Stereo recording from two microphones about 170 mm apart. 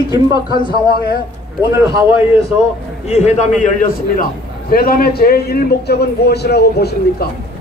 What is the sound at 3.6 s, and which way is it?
A man's voice, 55° left (ahead or behind).